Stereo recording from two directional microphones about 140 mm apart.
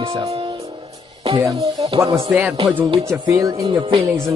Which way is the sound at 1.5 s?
40° right (ahead or behind).